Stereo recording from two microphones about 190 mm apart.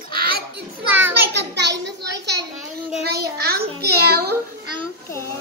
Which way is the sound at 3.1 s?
55° right (ahead or behind).